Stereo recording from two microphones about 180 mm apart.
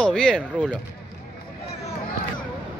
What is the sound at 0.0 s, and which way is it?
Speech, 5° left (ahead or behind).